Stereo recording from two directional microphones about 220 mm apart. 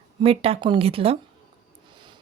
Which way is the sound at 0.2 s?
25° right (ahead or behind).